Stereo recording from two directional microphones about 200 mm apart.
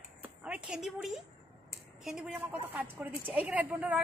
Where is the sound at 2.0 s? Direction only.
5° right (ahead or behind).